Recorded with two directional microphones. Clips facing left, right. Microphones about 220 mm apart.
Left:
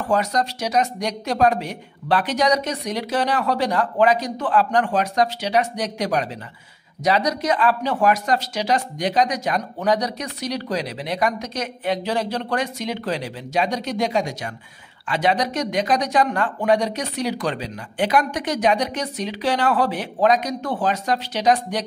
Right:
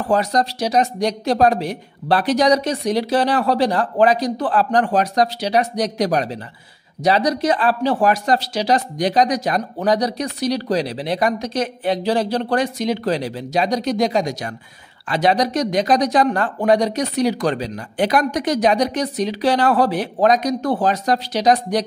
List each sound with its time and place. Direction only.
0.1 s speech: 35° right (ahead or behind)